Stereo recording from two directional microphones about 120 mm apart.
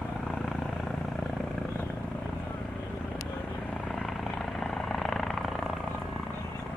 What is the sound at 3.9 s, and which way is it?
Vehicle, centre (ahead or behind).